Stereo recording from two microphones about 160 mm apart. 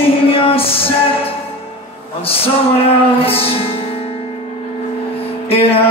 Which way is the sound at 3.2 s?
35° left (ahead or behind).